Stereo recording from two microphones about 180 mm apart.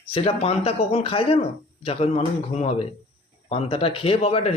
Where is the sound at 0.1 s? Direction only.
30° left (ahead or behind).